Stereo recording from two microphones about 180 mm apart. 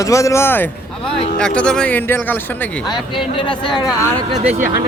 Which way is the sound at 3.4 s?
25° left (ahead or behind).